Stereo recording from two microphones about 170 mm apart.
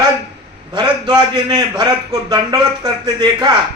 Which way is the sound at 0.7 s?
25° right (ahead or behind).